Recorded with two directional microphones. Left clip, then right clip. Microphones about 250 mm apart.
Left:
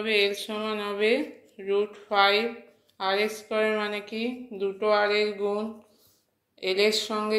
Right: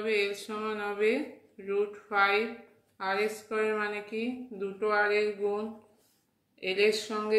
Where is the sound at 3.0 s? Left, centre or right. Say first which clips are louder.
Left 4 dB; left.